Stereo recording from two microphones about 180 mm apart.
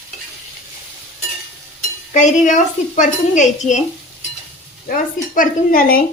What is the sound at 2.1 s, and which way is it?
A woman's voice, 40° left (ahead or behind).